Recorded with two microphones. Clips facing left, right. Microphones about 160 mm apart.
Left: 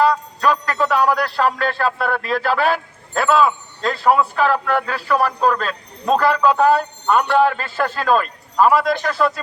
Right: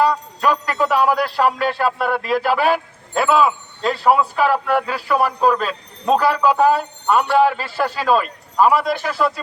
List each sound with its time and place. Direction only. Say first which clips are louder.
0.0 s a man's voice: left 1 dB; 15° right (ahead or behind)